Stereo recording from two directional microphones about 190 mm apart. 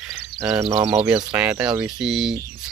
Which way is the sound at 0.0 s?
15° right (ahead or behind).